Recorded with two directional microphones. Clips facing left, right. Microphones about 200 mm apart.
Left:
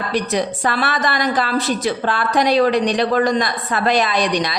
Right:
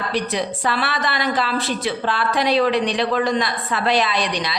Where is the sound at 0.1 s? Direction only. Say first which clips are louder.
Left 4 dB; 45° left (ahead or behind).